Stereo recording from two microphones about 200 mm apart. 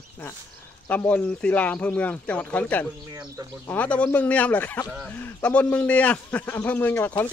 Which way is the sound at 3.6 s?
5° left (ahead or behind).